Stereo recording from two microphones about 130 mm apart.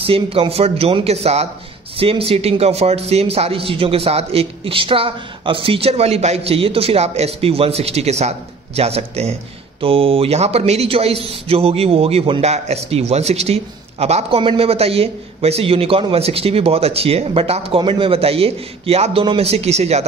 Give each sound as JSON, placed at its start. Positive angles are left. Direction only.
{"t": 0.0, "sound": "a man's voice", "side_deg": -45}